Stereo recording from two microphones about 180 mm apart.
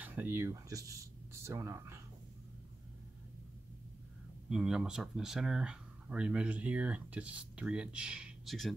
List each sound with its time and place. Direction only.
0.0 s speech: 10° right (ahead or behind)
4.5 s speech: 5° right (ahead or behind)